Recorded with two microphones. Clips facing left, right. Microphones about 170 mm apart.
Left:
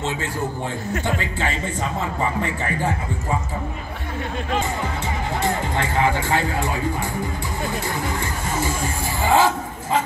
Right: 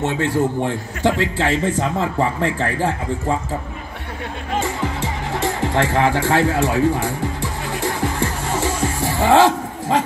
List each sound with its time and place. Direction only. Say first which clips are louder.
0.0 s a man's voice: right 7 dB; 75° right (ahead or behind)
5.6 s a man's voice: right 4 dB; 80° right
7.8 s music: right 4 dB; 80° right